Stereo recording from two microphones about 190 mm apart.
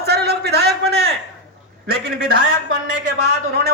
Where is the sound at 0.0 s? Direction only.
60° right (ahead or behind).